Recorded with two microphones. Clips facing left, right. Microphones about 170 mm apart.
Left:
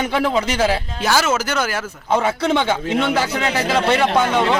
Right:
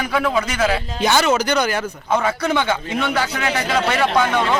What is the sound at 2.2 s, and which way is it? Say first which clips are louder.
A man's voice: left 2 dB; 25° left (ahead or behind).